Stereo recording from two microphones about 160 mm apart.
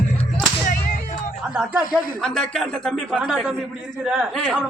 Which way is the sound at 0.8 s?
60° left (ahead or behind).